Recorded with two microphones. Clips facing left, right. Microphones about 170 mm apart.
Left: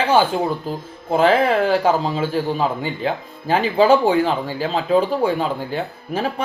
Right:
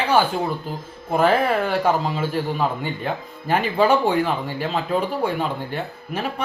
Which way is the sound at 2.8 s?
90° left.